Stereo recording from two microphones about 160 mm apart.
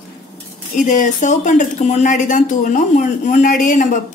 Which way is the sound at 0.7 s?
50° left (ahead or behind).